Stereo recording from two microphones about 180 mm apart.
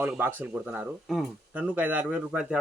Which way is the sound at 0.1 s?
10° right (ahead or behind).